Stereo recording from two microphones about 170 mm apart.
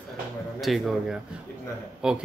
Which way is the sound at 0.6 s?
Centre (ahead or behind).